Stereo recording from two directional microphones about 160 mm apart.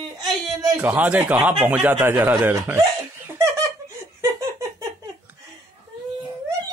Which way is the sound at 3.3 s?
15° right (ahead or behind).